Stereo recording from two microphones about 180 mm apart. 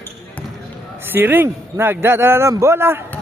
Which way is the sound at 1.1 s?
10° right (ahead or behind).